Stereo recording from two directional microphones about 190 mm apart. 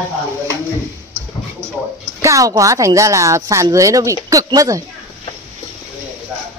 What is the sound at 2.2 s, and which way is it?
A woman's voice, 15° right (ahead or behind).